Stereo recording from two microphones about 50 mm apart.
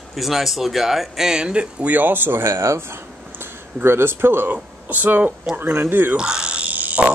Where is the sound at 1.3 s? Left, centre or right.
Centre.